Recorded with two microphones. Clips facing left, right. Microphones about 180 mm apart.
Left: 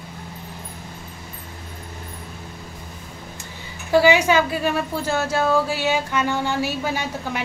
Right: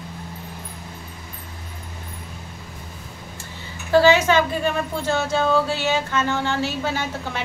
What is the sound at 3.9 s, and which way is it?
A woman's voice, 10° left (ahead or behind).